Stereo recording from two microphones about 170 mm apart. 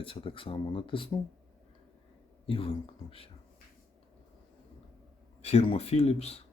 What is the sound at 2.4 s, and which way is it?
Speech, 30° left (ahead or behind).